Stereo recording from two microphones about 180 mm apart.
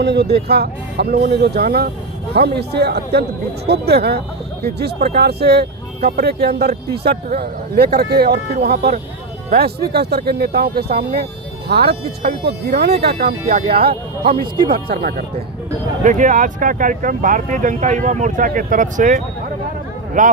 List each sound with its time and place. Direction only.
0.0 s speech: 65° right (ahead or behind)
16.0 s speech: 45° right (ahead or behind)